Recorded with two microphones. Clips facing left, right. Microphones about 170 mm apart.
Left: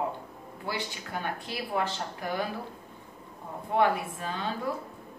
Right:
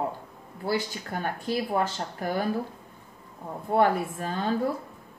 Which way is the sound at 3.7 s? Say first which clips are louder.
Right 3 dB; 45° right (ahead or behind).